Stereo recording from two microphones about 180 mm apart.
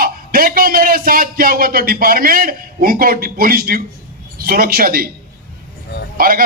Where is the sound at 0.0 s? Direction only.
55° right (ahead or behind).